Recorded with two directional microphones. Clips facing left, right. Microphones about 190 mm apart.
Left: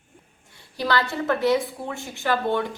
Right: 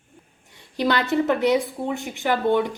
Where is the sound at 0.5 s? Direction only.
20° right (ahead or behind).